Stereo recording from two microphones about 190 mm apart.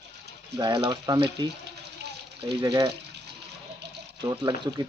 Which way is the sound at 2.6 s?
25° right (ahead or behind).